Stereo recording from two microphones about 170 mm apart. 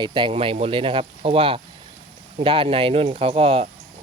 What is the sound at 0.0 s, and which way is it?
Speech, 30° right (ahead or behind).